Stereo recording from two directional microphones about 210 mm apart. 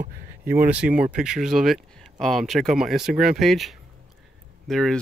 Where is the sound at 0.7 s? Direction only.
5° right (ahead or behind).